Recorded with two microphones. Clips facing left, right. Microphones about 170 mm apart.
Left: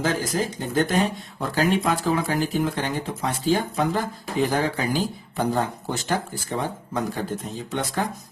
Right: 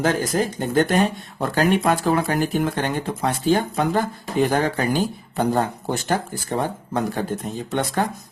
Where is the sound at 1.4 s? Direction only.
60° right (ahead or behind).